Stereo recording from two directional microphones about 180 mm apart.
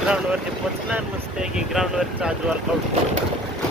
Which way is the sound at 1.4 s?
5° right (ahead or behind).